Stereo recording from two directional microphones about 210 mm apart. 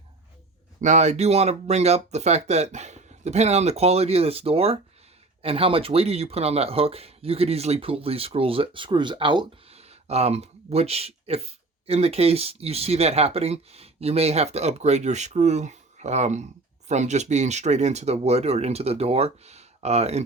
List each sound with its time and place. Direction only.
0.8 s speech: 35° right (ahead or behind)